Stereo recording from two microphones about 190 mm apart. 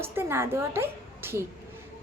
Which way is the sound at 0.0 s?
10° right (ahead or behind).